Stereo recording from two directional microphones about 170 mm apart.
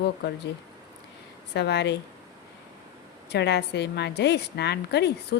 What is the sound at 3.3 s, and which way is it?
Speech, 80° left.